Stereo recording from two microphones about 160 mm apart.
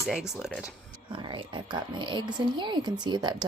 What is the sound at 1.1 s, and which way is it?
Speech, 30° right (ahead or behind).